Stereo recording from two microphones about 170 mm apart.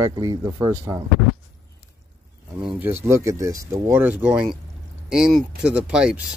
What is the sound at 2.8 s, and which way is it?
Speech, 15° right (ahead or behind).